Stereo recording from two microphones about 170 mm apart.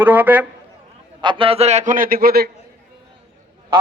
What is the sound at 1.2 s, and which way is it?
A man's voice, 30° right (ahead or behind).